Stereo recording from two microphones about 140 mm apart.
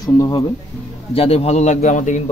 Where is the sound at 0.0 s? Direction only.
25° left (ahead or behind).